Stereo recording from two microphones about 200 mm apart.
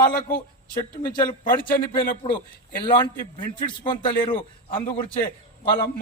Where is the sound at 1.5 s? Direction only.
10° left (ahead or behind).